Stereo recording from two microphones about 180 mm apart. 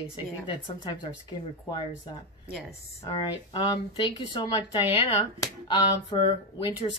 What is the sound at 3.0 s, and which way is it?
Speech, 30° left (ahead or behind).